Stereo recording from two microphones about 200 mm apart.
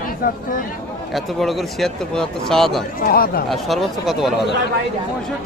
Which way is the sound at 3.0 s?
50° left (ahead or behind).